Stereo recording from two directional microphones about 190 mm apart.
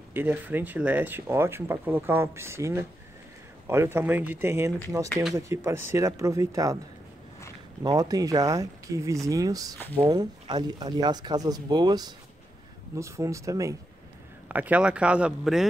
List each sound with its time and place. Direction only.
0.1 s speech: 10° right (ahead or behind)
7.8 s speech: 20° right (ahead or behind); by 15.6 s 5° right (ahead or behind)